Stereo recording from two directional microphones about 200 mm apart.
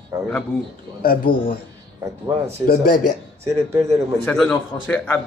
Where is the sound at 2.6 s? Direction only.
45° left (ahead or behind).